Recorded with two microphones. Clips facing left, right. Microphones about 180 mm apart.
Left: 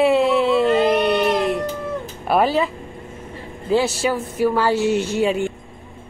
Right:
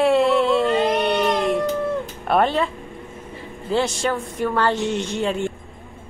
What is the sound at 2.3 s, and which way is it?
Speech, 5° left (ahead or behind).